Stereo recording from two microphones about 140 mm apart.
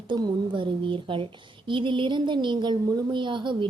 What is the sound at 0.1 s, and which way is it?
Speech, 35° right (ahead or behind).